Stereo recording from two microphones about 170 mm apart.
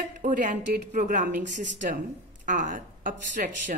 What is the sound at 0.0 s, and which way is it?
A woman's voice, 50° right (ahead or behind).